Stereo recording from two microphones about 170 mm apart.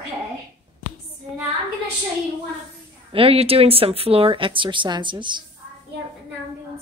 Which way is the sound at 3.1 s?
35° right (ahead or behind).